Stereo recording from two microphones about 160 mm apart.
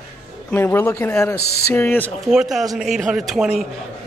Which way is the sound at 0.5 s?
15° left (ahead or behind).